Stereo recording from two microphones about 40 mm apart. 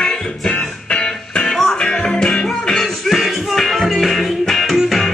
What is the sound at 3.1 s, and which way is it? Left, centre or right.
Music, centre.